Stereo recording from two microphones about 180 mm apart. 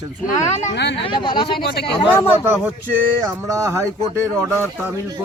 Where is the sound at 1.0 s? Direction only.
25° left (ahead or behind).